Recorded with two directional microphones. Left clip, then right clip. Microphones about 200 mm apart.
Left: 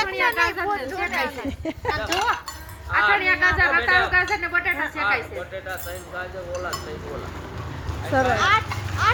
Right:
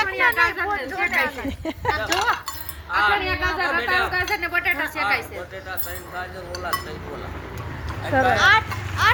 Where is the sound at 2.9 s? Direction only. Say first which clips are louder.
Left 1 dB; 55° right (ahead or behind).